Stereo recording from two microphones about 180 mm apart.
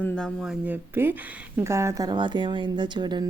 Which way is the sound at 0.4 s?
10° right (ahead or behind).